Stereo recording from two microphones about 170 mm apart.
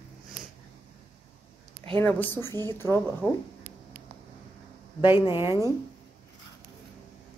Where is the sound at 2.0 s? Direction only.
10° left (ahead or behind).